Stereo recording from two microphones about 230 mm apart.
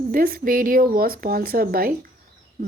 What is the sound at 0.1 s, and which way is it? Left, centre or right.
A woman's voice, right.